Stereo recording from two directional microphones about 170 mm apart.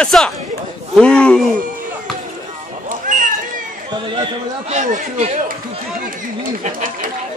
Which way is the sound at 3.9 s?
30° right (ahead or behind).